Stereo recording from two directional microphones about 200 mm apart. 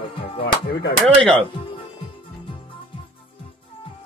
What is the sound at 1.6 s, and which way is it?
Music, 25° left (ahead or behind).